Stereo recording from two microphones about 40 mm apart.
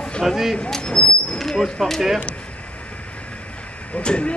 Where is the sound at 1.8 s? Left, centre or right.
Centre.